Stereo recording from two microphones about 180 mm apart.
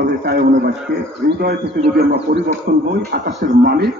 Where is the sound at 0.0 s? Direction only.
65° right (ahead or behind).